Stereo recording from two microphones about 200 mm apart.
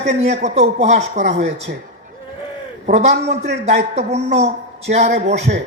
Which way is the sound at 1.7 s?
50° right (ahead or behind).